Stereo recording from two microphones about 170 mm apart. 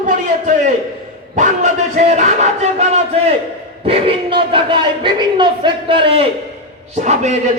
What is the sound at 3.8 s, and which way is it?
A man's voice, 35° right (ahead or behind).